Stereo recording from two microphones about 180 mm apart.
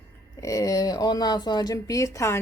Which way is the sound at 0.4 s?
20° left (ahead or behind).